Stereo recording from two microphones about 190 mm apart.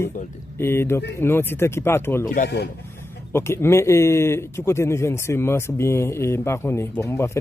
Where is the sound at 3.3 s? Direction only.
15° left (ahead or behind).